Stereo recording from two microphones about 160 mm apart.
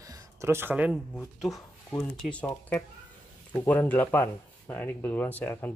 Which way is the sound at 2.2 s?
10° left (ahead or behind).